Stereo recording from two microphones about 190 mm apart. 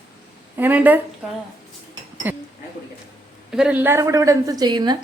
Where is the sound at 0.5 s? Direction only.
10° right (ahead or behind).